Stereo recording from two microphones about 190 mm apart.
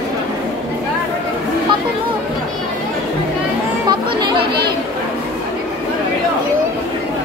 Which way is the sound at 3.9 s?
25° right (ahead or behind).